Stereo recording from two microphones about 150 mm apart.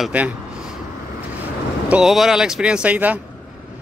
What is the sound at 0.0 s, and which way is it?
Speech, 10° right (ahead or behind).